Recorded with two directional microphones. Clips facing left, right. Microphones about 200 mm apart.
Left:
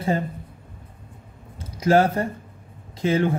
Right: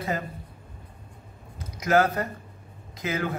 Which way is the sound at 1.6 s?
30° left (ahead or behind).